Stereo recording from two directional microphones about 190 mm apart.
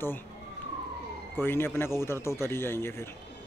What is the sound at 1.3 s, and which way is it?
Speech, 10° left (ahead or behind).